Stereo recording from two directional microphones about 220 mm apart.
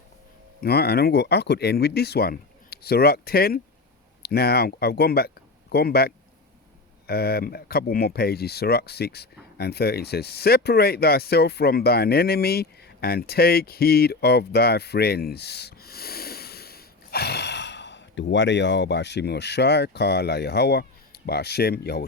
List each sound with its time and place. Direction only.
0.6 s speech: 45° left (ahead or behind)